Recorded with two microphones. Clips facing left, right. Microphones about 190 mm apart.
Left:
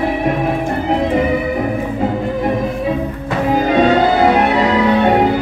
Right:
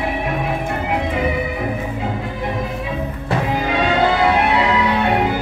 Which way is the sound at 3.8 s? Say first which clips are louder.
Left 3 dB; 40° left (ahead or behind).